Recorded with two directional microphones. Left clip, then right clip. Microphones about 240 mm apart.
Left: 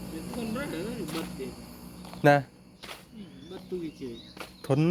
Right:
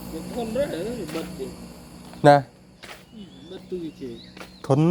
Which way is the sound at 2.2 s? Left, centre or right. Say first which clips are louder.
Right 7 dB; centre.